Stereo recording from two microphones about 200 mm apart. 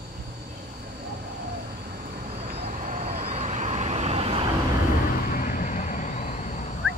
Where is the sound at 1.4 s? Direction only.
45° right (ahead or behind).